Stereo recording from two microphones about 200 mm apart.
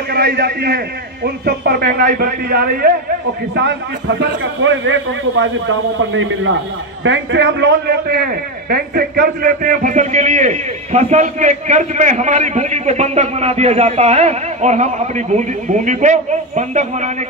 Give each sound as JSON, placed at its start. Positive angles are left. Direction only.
{"t": 0.1, "sound": "a man's voice", "side_deg": -50}
{"t": 4.2, "sound": "a man's voice", "side_deg": -70}
{"t": 7.1, "sound": "a man's voice", "side_deg": -65}